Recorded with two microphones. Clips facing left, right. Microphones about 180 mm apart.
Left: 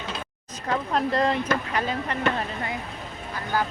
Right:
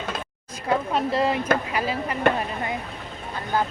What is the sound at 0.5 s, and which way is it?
Speech, 5° right (ahead or behind).